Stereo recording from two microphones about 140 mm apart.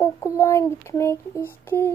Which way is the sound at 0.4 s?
20° left (ahead or behind).